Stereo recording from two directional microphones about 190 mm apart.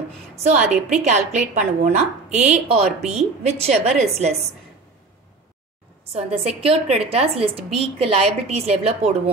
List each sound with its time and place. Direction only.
0.4 s a woman's voice: 40° right (ahead or behind)
6.1 s a woman's voice: 35° right (ahead or behind)